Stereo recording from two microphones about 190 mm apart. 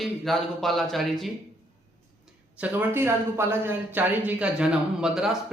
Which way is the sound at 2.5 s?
10° right (ahead or behind).